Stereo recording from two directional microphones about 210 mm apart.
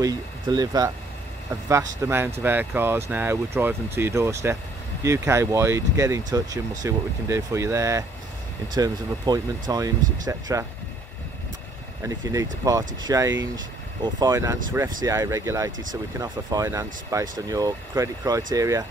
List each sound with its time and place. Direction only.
0.0 s speech: 20° right (ahead or behind)
12.6 s speech: 15° right (ahead or behind)
13.3 s speech: 60° right (ahead or behind)
14.0 s speech: 20° right (ahead or behind)